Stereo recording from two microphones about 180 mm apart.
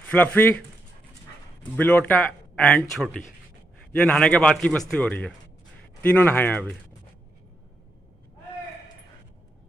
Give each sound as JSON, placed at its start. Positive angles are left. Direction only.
{"t": 0.1, "sound": "speech", "side_deg": 10}
{"t": 1.8, "sound": "speech", "side_deg": 10}